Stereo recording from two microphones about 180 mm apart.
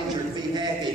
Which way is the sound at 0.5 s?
25° right (ahead or behind).